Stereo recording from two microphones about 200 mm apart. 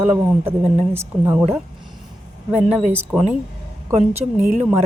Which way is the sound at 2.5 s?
5° right (ahead or behind).